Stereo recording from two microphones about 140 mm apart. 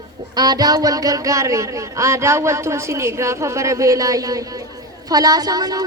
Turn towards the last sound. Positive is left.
turn(degrees=-25)  # may be behind; listen again after turning